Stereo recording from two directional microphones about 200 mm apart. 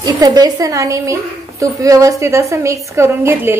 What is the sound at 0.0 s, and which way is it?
A woman's voice, 20° right (ahead or behind).